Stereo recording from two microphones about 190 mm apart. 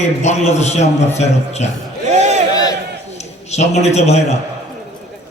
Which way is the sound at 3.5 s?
35° left (ahead or behind).